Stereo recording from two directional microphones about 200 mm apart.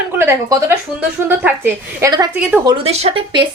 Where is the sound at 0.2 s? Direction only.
10° right (ahead or behind).